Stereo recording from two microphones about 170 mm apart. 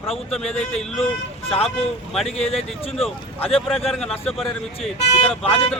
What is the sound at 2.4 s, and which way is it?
Speech, 35° left (ahead or behind).